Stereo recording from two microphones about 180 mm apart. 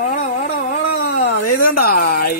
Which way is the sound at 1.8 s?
55° left (ahead or behind).